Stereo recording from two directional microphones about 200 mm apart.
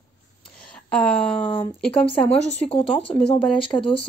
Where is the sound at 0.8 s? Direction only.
5° left (ahead or behind).